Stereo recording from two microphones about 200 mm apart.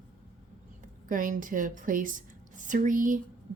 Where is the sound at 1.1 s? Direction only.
40° right (ahead or behind).